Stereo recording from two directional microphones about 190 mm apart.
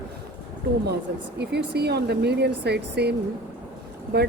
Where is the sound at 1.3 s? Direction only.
60° right (ahead or behind).